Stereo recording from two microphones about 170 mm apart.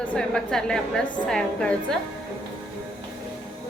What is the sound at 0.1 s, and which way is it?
A woman's voice, 5° left (ahead or behind).